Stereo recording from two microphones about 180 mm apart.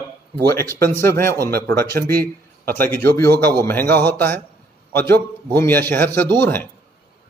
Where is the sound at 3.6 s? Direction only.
10° left (ahead or behind).